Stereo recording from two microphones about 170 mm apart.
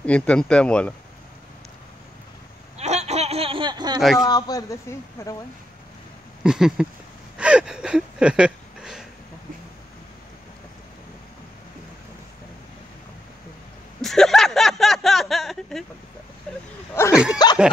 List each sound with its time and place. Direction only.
0.0 s speech: 5° left (ahead or behind)
2.8 s a sound: 40° right (ahead or behind)
4.0 s speech: centre (ahead or behind)
4.3 s a man's voice: 20° left (ahead or behind)
6.4 s speech: 5° right (ahead or behind)
7.3 s a sound: 5° right (ahead or behind)
14.0 s speech: centre (ahead or behind)
16.9 s a man's voice: 15° left (ahead or behind)